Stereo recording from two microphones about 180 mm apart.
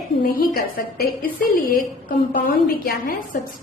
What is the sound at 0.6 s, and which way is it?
Speech, 55° left (ahead or behind).